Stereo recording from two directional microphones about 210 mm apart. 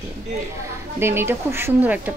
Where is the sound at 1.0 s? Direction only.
10° right (ahead or behind).